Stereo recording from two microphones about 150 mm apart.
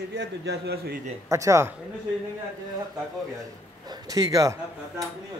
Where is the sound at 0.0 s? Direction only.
90° right.